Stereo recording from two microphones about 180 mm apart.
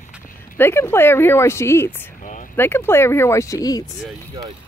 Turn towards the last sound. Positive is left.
turn(degrees=0)  # may be behind; listen again after turning